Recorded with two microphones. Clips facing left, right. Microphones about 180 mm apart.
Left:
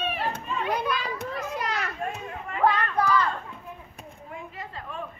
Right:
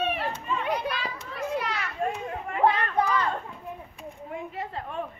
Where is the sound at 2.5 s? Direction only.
25° right (ahead or behind).